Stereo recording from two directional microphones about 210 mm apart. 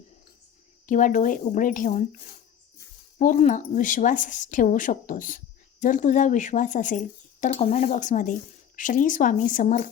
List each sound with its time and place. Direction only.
0.9 s speech: 40° left (ahead or behind)
3.2 s speech: 35° left (ahead or behind)